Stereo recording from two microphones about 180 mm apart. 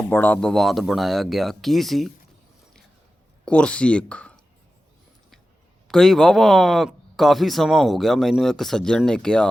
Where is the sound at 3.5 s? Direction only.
5° left (ahead or behind).